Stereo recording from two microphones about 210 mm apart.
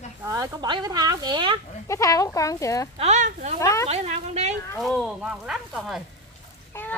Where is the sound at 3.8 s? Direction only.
30° right (ahead or behind).